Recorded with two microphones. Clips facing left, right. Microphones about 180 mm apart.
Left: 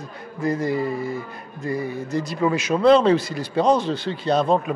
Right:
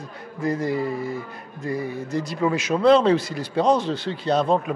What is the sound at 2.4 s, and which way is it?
Speech, 15° left (ahead or behind).